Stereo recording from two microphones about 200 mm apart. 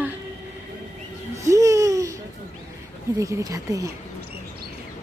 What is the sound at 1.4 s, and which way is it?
Babbling, 15° right (ahead or behind).